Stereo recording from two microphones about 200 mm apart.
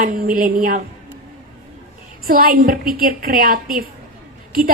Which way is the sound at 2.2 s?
45° right (ahead or behind).